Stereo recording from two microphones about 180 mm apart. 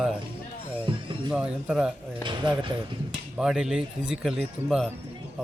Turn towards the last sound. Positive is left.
turn(degrees=0)  # may be behind; listen again after turning